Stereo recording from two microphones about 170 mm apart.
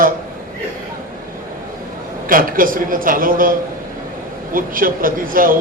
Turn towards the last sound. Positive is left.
turn(degrees=-55)  # may be behind; listen again after turning